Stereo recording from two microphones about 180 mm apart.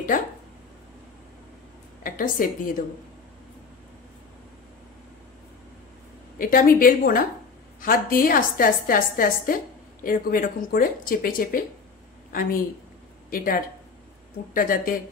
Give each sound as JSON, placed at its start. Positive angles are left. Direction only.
{"t": 2.0, "sound": "a woman's voice", "side_deg": 50}
{"t": 6.3, "sound": "a woman's voice", "side_deg": 50}